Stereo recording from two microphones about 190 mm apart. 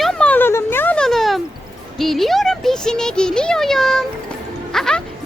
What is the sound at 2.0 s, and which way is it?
Speech, centre (ahead or behind).